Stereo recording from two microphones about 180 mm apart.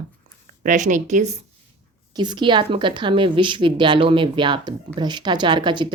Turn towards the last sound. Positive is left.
turn(degrees=-25)  # may be behind; listen again after turning